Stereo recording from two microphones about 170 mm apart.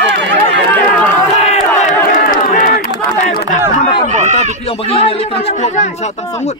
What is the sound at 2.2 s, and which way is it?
Crowd, 55° left (ahead or behind).